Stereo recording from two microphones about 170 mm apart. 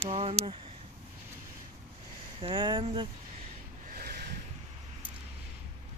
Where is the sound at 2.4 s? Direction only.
30° right (ahead or behind).